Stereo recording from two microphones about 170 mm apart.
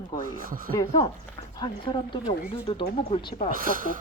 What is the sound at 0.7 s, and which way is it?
A woman's voice, 20° left (ahead or behind).